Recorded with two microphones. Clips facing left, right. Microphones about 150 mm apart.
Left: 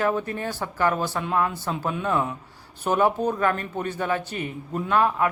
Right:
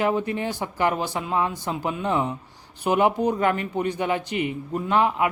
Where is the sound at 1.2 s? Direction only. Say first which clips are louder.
Even; 5° right (ahead or behind).